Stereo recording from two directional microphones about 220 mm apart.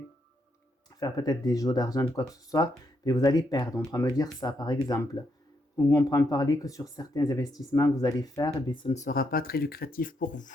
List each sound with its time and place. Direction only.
0.9 s speech: 15° left (ahead or behind); by 10.5 s 35° left (ahead or behind)